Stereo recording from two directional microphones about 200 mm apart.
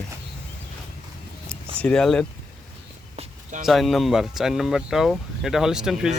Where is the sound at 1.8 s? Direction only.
5° left (ahead or behind).